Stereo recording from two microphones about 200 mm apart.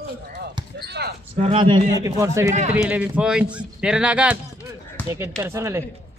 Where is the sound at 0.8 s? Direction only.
55° right (ahead or behind).